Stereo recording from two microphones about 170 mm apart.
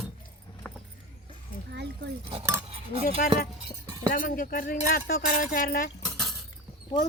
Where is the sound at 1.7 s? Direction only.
80° right.